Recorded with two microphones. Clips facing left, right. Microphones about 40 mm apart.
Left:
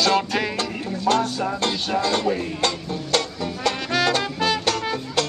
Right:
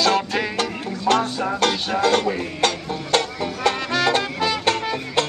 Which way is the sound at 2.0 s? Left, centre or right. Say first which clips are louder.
Right 5 dB; right.